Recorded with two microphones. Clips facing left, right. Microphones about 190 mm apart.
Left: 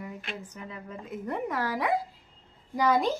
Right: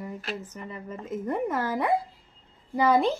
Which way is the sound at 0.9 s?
5° right (ahead or behind).